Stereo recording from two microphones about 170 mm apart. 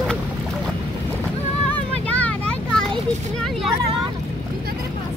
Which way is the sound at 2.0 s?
10° left (ahead or behind).